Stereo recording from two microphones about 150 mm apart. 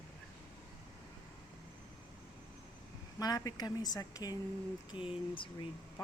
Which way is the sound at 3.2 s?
25° left (ahead or behind).